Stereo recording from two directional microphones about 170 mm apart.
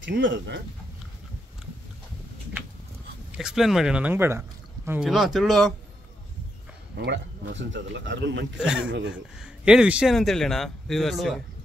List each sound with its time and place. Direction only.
0.0 s speech: 90° right
3.3 s speech: 5° right (ahead or behind)
7.0 s speech: 90° right
8.5 s speech: 5° right (ahead or behind)